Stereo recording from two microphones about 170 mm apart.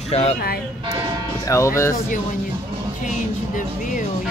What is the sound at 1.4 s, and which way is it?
Speech, 15° left (ahead or behind).